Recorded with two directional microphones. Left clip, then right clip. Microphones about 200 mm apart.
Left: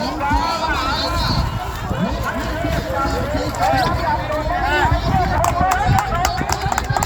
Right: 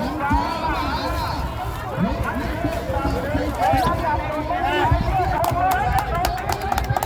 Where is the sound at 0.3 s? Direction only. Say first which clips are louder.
Left 3 dB; 25° left (ahead or behind).